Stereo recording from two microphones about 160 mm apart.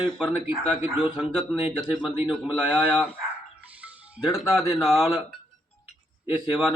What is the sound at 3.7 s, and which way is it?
Music, 5° right (ahead or behind).